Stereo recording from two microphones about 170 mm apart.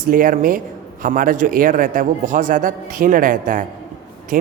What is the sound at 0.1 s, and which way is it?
A man's voice, 55° right (ahead or behind).